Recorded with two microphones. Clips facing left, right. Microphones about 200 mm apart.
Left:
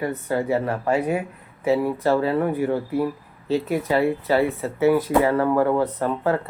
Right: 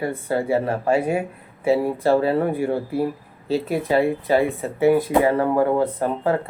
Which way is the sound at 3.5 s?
30° right (ahead or behind).